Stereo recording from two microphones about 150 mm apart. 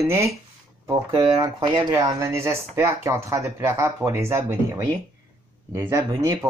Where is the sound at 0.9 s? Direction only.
40° right (ahead or behind).